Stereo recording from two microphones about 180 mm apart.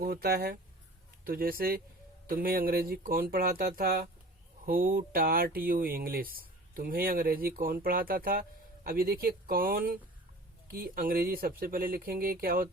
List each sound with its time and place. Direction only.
0.0 s speech: 55° right (ahead or behind)